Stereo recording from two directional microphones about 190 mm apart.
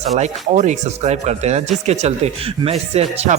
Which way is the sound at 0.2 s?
40° right (ahead or behind).